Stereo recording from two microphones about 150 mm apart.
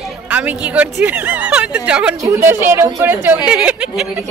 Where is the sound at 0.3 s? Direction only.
10° right (ahead or behind).